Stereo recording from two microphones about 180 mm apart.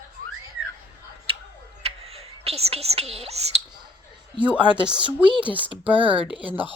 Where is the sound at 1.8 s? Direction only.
35° right (ahead or behind).